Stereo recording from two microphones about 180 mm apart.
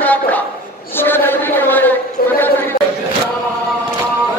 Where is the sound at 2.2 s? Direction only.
55° left (ahead or behind).